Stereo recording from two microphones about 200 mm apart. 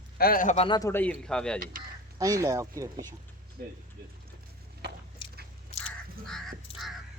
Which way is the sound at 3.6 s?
45° right (ahead or behind).